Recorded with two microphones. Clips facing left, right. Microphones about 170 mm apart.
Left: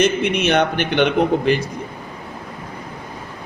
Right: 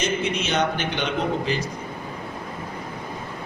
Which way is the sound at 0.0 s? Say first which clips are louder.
Left 7 dB; 60° left (ahead or behind).